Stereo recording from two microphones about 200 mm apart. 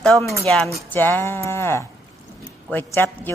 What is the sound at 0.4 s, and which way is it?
Speech, 5° left (ahead or behind).